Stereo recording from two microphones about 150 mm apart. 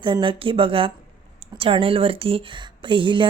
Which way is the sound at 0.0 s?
35° right (ahead or behind).